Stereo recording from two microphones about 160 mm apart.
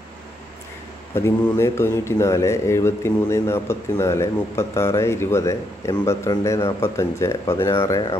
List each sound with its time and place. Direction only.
1.1 s speech: 15° left (ahead or behind)